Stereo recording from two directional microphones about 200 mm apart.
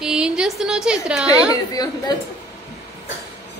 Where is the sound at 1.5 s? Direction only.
20° left (ahead or behind).